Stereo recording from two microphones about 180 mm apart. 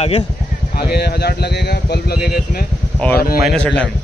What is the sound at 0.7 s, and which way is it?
Speech, 60° left (ahead or behind).